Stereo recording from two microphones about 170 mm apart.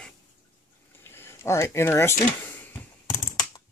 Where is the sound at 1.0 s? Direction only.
15° left (ahead or behind).